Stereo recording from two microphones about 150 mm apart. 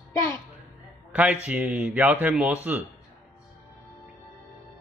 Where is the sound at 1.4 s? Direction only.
10° right (ahead or behind).